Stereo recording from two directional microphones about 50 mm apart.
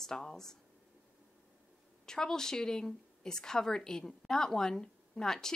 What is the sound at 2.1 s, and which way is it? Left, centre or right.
Speech, centre.